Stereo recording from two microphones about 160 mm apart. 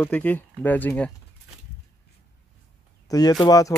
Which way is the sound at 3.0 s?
25° left (ahead or behind).